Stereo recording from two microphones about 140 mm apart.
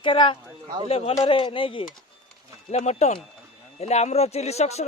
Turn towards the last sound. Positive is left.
turn(degrees=50)  # may be behind; listen again after turning